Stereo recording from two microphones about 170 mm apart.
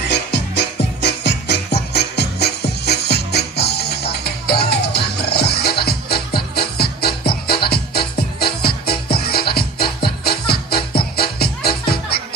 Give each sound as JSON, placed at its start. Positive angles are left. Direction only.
{"t": 0.0, "sound": "music", "side_deg": 85}